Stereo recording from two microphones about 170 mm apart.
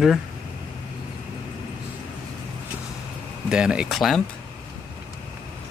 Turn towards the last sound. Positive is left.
turn(degrees=0)  # may be behind; listen again after turning